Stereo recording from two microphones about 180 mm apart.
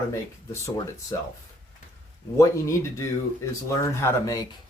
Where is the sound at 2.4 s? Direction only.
15° left (ahead or behind).